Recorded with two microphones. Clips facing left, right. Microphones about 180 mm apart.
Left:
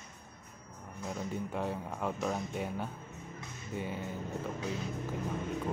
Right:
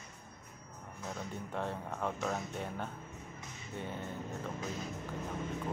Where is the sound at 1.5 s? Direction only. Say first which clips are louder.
Left 2 dB; 5° left (ahead or behind).